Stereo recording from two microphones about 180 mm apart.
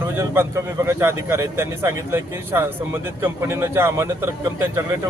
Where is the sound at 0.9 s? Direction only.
15° right (ahead or behind).